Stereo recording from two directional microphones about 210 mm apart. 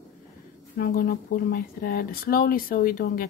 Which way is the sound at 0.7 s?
45° left (ahead or behind).